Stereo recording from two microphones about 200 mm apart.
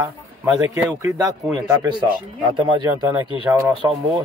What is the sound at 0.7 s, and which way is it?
Speech, 15° right (ahead or behind).